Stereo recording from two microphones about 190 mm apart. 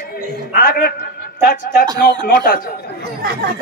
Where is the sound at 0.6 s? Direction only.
50° left (ahead or behind).